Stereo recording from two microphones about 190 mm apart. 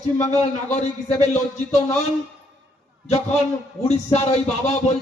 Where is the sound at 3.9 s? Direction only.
35° left (ahead or behind).